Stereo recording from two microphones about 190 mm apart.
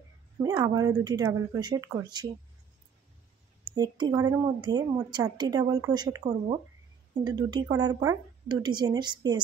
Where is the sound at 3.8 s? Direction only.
20° right (ahead or behind).